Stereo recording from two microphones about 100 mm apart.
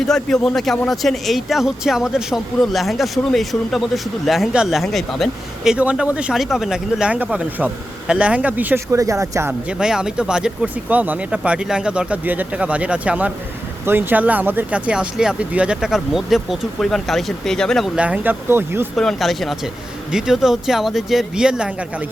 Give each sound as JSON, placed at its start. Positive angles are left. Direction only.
{"t": 0.1, "sound": "speech", "side_deg": 5}
{"t": 5.7, "sound": "speech", "side_deg": -10}
{"t": 8.9, "sound": "speech", "side_deg": -30}
{"t": 9.6, "sound": "speech", "side_deg": -5}
{"t": 17.9, "sound": "speech", "side_deg": -10}
{"t": 18.9, "sound": "speech", "side_deg": 0}